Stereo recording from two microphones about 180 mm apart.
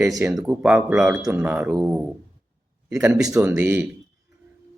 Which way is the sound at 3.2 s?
20° right (ahead or behind).